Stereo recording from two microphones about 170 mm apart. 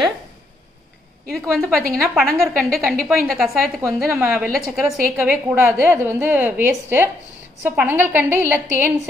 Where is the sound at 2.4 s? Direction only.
Centre (ahead or behind).